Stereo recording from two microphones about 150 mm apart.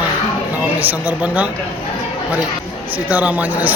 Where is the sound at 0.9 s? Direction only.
10° right (ahead or behind).